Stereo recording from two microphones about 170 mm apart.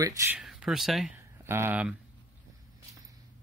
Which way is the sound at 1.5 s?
10° right (ahead or behind).